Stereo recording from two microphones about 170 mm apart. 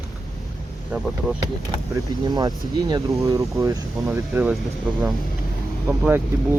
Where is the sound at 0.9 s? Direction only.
10° right (ahead or behind).